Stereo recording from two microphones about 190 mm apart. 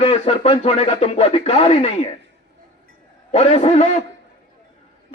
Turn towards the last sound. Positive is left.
turn(degrees=35)  # may be behind; listen again after turning